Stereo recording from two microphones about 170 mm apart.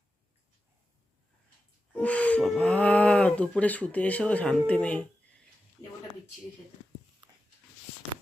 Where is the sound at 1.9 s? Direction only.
10° left (ahead or behind).